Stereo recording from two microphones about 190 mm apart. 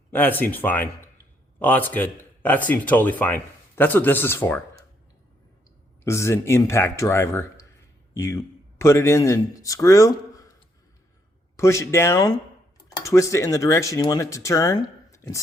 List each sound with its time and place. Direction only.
0.1 s speech: 10° left (ahead or behind)
6.1 s speech: 15° left (ahead or behind)
11.5 s speech: 15° left (ahead or behind)